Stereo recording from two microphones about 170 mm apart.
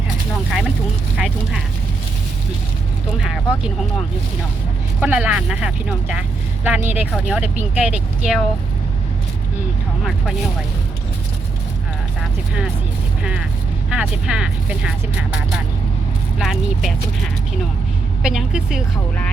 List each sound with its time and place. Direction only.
1.1 s speech: 5° right (ahead or behind)
3.2 s speech: 5° right (ahead or behind)
4.9 s speech: 10° right (ahead or behind)
10.0 s speech: centre (ahead or behind)
13.9 s speech: 5° right (ahead or behind)
18.2 s speech: 5° right (ahead or behind)